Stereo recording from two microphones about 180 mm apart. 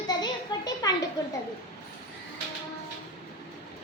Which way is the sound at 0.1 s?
20° left (ahead or behind).